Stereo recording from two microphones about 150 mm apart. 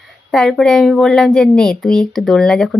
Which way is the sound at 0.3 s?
5° left (ahead or behind).